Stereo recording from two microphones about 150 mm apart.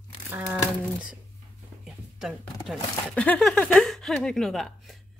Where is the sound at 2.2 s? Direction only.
Centre (ahead or behind).